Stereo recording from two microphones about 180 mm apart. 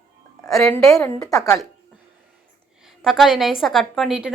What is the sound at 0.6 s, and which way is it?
Speech, 15° left (ahead or behind).